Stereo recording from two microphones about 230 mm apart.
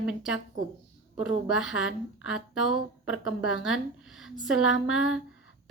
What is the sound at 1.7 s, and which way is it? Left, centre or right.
Speech, left.